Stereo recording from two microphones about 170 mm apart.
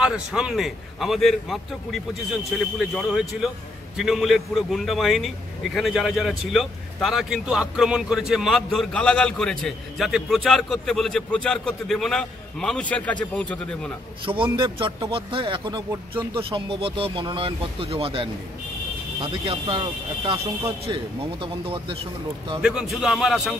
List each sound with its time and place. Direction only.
0.0 s a man's voice: 5° right (ahead or behind)
14.2 s speech: 30° right (ahead or behind)
22.6 s a man's voice: 5° right (ahead or behind)